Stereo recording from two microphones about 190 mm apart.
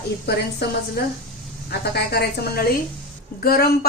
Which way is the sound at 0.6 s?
60° left (ahead or behind).